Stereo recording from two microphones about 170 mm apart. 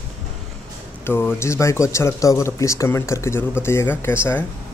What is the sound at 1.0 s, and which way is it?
Speech, 15° left (ahead or behind).